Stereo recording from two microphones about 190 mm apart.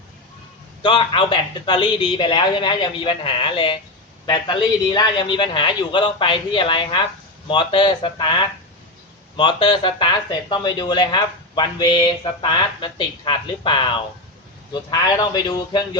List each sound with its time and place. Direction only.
0.8 s speech: 25° left (ahead or behind)